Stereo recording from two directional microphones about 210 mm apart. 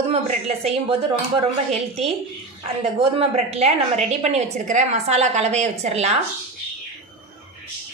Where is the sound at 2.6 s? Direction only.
25° right (ahead or behind).